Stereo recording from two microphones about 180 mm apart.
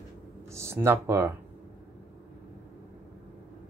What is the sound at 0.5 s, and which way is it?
Speech, 15° right (ahead or behind).